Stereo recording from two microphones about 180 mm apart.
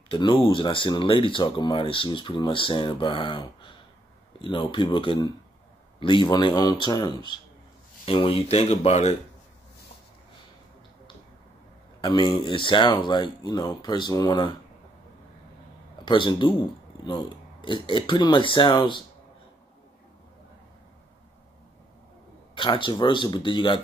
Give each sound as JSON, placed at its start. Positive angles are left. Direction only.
{"t": 0.1, "sound": "speech", "side_deg": 30}
{"t": 12.0, "sound": "speech", "side_deg": 25}
{"t": 16.1, "sound": "speech", "side_deg": 25}
{"t": 22.5, "sound": "speech", "side_deg": 25}